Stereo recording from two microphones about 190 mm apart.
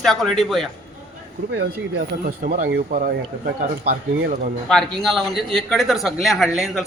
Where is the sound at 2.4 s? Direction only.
45° right (ahead or behind).